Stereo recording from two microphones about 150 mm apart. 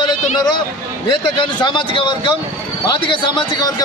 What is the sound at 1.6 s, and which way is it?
Speech, 30° left (ahead or behind).